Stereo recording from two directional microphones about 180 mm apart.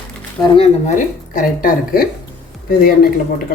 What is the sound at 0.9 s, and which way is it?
Speech, 50° left (ahead or behind).